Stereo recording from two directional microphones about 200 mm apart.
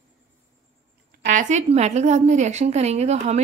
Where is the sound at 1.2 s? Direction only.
35° right (ahead or behind).